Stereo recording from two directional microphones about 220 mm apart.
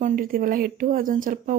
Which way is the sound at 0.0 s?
40° right (ahead or behind).